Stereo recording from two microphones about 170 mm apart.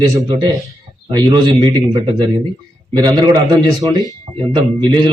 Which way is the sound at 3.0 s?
25° right (ahead or behind).